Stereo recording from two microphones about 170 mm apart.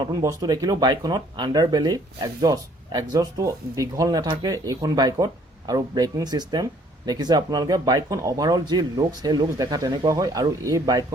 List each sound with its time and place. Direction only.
0.0 s speech: 20° right (ahead or behind)